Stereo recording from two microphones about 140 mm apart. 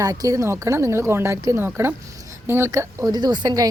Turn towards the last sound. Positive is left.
turn(degrees=-25)  # may be behind; listen again after turning